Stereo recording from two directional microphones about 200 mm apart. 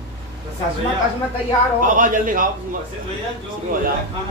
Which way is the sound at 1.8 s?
40° right (ahead or behind).